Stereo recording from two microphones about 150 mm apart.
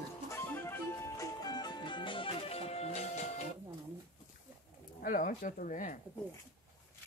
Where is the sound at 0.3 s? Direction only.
15° left (ahead or behind); by 3.5 s 50° left (ahead or behind).